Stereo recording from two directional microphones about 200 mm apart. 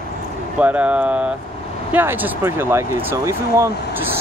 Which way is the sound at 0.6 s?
5° right (ahead or behind).